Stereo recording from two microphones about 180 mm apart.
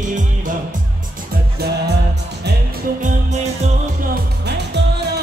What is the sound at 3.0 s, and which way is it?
Music, 40° right (ahead or behind).